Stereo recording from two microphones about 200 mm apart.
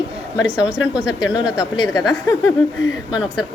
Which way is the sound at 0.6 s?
5° right (ahead or behind).